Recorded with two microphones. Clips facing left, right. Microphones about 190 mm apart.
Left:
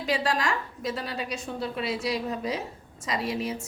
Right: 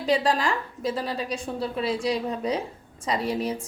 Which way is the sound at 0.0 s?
35° right (ahead or behind).